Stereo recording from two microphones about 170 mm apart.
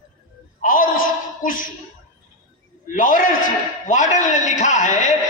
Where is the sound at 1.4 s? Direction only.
55° left (ahead or behind).